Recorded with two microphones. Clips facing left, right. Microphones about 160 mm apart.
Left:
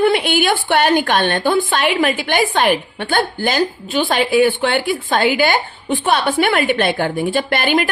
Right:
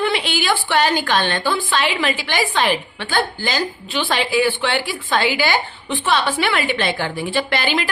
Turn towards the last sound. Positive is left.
turn(degrees=55)  # may be behind; listen again after turning